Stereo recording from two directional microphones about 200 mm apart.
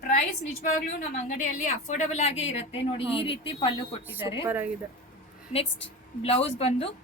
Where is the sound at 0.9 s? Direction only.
40° left (ahead or behind).